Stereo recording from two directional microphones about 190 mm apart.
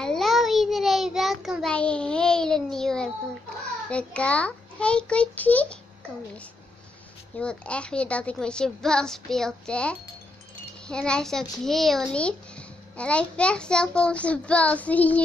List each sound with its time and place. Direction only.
0.0 s a child's voice: centre (ahead or behind)
7.3 s a child's voice: 5° left (ahead or behind)